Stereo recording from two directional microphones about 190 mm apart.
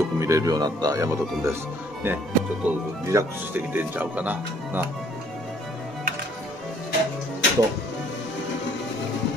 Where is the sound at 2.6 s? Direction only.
15° right (ahead or behind).